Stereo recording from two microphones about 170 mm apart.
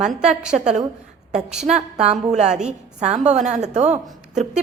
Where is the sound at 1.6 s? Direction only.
40° right (ahead or behind).